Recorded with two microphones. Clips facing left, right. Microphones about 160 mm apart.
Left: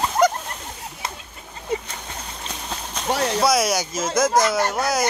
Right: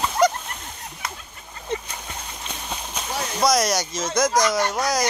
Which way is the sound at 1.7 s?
10° left (ahead or behind).